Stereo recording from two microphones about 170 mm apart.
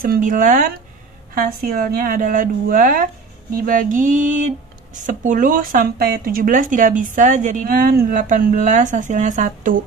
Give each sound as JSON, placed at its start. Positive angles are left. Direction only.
{"t": 0.0, "sound": "a woman's voice", "side_deg": -55}